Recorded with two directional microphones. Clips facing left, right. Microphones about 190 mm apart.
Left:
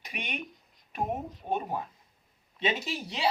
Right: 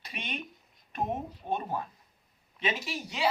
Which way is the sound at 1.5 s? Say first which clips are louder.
Left 1 dB; 15° left (ahead or behind).